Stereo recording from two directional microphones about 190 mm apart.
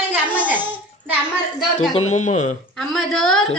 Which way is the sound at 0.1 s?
10° right (ahead or behind).